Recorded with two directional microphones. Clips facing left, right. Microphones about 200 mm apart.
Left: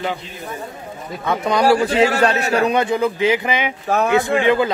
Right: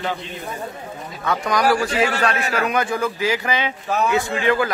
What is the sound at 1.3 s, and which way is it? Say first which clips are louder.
A man's voice: left 3 dB; 25° left (ahead or behind).